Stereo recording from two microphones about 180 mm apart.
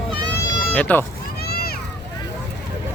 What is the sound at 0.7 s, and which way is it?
Speech, 10° left (ahead or behind).